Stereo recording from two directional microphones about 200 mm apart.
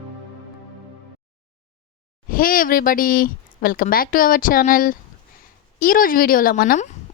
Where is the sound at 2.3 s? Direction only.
45° left (ahead or behind).